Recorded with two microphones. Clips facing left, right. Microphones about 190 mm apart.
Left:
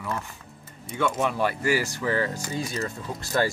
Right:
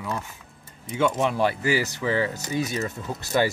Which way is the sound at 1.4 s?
20° right (ahead or behind).